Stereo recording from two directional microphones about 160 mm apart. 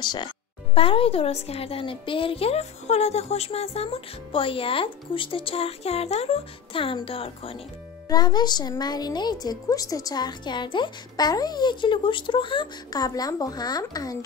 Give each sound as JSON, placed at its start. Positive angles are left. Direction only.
{"t": 0.0, "sound": "a woman's voice", "side_deg": 25}
{"t": 8.1, "sound": "a woman's voice", "side_deg": 25}